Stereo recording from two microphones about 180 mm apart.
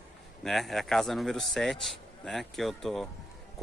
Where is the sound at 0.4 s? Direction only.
Centre (ahead or behind).